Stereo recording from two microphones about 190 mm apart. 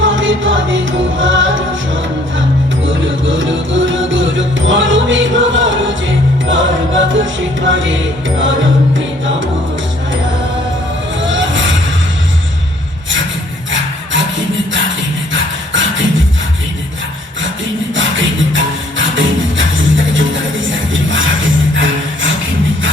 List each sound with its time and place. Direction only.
0.0 s music: 90° right
2.8 s music: 90° right
11.2 s music: 75° right (ahead or behind)
13.7 s music: 80° right
17.9 s music: 80° right